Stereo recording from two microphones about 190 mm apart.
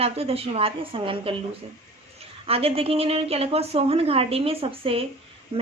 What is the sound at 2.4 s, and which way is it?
A woman's voice, 30° right (ahead or behind).